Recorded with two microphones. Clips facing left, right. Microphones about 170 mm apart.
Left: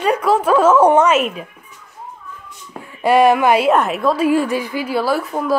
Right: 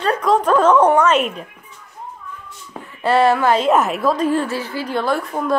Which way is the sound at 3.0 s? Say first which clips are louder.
Left 2 dB; 15° left (ahead or behind).